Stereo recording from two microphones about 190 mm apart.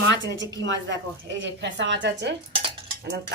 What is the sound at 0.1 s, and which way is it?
A woman's voice, 70° right (ahead or behind).